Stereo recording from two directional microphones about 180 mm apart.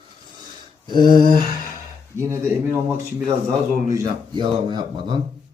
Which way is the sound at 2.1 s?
15° right (ahead or behind).